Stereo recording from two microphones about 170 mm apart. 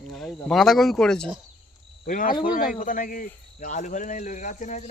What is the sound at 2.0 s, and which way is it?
Speech, 55° left (ahead or behind).